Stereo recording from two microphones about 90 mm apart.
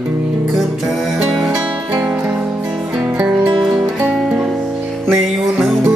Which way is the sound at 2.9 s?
10° right (ahead or behind).